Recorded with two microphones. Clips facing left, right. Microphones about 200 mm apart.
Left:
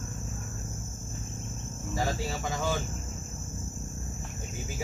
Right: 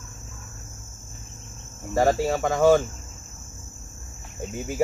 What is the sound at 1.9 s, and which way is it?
Speech, 60° right (ahead or behind).